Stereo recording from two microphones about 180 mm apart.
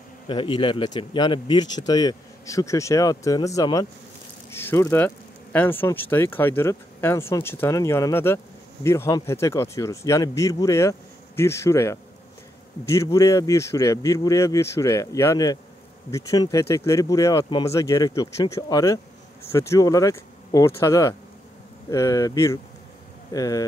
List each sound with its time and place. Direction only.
0.3 s speech: 25° left (ahead or behind)